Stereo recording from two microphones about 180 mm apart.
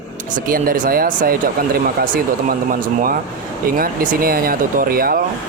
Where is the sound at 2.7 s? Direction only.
50° right (ahead or behind).